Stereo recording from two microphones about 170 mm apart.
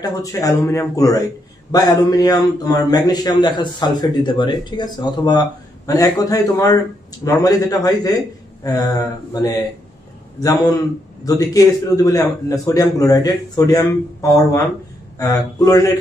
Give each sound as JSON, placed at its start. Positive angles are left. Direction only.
{"t": 0.0, "sound": "a man's voice", "side_deg": 20}